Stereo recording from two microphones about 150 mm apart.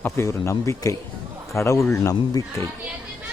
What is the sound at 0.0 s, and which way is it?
Speech, 20° left (ahead or behind).